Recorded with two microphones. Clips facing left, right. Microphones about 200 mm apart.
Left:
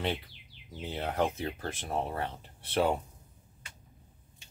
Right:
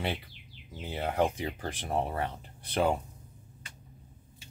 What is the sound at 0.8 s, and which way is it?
Speech, 10° right (ahead or behind).